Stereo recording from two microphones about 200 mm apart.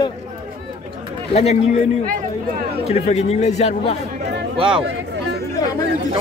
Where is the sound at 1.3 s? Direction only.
30° left (ahead or behind).